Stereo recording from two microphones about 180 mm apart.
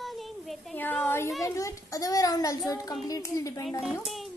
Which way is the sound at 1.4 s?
20° left (ahead or behind).